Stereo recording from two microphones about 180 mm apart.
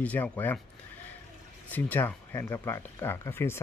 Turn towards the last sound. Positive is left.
turn(degrees=15)  # may be behind; listen again after turning